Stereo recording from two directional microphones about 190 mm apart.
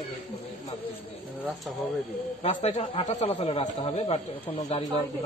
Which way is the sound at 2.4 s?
35° left (ahead or behind).